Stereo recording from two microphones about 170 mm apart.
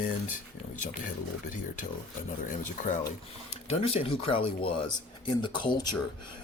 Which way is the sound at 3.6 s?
35° left (ahead or behind).